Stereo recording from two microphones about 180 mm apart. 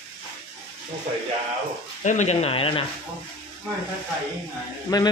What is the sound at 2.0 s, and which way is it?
Speech, 40° left (ahead or behind).